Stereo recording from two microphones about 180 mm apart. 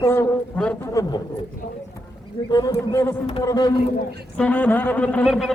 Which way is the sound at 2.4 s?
20° left (ahead or behind).